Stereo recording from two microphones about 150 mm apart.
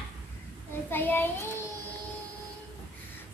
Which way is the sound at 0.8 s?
15° left (ahead or behind).